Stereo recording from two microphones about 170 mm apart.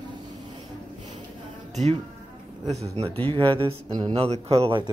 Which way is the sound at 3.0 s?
35° right (ahead or behind).